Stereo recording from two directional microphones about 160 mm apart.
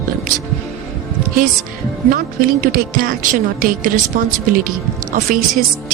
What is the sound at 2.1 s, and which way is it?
Speech, 60° right (ahead or behind).